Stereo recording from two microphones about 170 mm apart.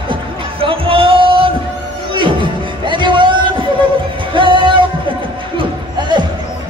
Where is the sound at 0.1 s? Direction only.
30° right (ahead or behind).